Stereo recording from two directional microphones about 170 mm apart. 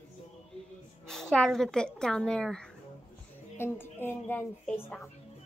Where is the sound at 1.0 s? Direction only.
5° left (ahead or behind).